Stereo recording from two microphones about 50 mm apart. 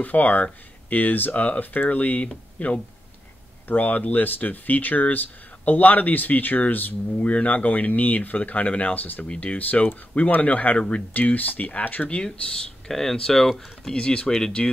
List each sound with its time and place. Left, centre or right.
0.0 s speech: left
12.8 s speech: centre